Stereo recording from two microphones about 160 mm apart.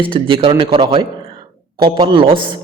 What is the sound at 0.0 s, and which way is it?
A man's voice, 35° right (ahead or behind).